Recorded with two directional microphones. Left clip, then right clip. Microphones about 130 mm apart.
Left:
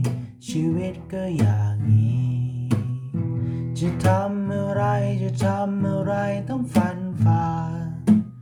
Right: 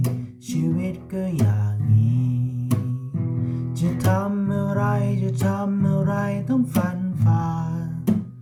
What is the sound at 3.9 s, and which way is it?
Music, 20° left (ahead or behind).